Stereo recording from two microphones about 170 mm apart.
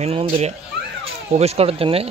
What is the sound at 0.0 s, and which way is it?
Speech, 35° right (ahead or behind).